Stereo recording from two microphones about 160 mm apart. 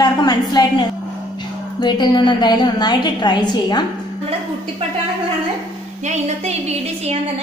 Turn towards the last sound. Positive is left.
turn(degrees=-40)  # may be behind; listen again after turning